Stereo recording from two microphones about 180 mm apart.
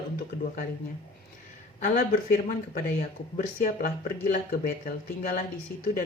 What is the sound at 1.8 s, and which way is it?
Speech, 50° left (ahead or behind).